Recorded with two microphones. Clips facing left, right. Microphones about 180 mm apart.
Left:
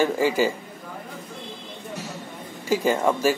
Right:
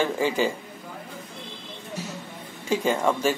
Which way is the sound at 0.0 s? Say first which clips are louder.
Left 3 dB; 10° left (ahead or behind).